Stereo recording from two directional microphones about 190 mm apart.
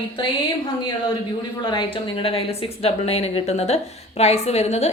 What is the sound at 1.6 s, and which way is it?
A woman's voice, 25° left (ahead or behind).